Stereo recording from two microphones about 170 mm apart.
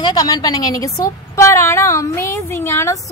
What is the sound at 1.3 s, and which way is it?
Female singing, 15° left (ahead or behind).